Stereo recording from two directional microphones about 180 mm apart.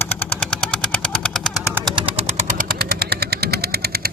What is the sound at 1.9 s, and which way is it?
Machine gun, 30° right (ahead or behind).